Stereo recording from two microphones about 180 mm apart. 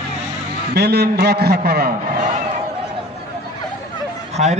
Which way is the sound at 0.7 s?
65° right (ahead or behind).